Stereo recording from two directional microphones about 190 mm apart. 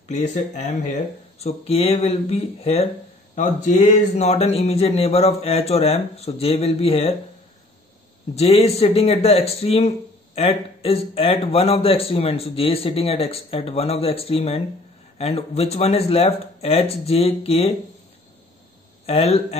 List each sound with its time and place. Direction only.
0.1 s speech: 40° left (ahead or behind)
8.4 s speech: 30° left (ahead or behind)
19.0 s speech: 30° left (ahead or behind)